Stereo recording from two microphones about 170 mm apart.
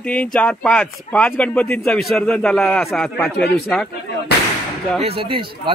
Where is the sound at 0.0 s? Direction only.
5° left (ahead or behind).